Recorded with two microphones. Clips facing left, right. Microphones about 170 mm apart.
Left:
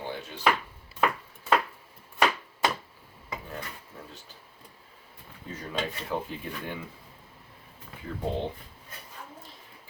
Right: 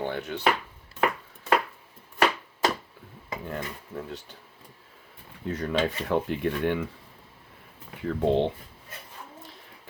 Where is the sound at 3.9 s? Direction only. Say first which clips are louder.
Right 13 dB; 65° right (ahead or behind).